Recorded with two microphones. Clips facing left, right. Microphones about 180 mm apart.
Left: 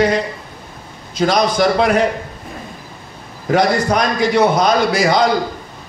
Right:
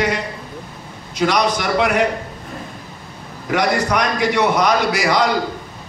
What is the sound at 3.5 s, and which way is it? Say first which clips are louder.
A man's voice: left 3 dB; 30° left (ahead or behind).